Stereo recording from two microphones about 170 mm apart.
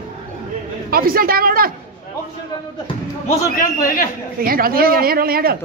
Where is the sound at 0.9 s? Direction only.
60° right (ahead or behind).